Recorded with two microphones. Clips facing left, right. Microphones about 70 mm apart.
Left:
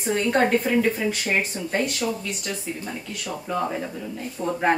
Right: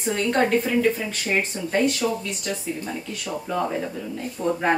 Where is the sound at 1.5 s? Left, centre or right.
Centre.